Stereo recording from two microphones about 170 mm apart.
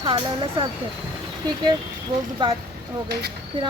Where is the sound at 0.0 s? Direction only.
30° right (ahead or behind).